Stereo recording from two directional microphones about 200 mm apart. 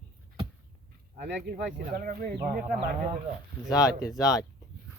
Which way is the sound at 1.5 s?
45° right (ahead or behind).